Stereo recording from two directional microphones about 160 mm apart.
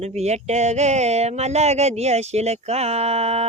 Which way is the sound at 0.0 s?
45° right (ahead or behind).